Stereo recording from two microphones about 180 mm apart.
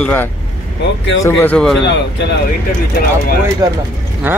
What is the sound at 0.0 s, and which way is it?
Speech, 10° left (ahead or behind).